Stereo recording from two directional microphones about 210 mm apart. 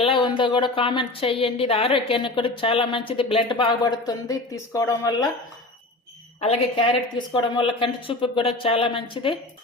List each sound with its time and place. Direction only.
0.0 s a woman's voice: 25° left (ahead or behind)
6.4 s a woman's voice: 25° left (ahead or behind)